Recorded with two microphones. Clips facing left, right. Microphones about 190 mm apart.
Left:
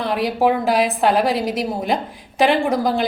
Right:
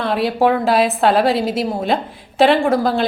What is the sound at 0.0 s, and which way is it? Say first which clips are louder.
A woman's voice: right 2 dB; 15° left (ahead or behind).